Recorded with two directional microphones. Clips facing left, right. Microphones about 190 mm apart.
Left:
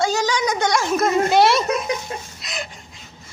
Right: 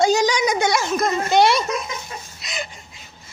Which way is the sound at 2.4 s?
Centre (ahead or behind).